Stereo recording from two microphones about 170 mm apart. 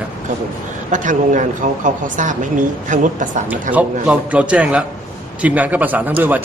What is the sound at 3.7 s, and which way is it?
A man's voice, 10° right (ahead or behind).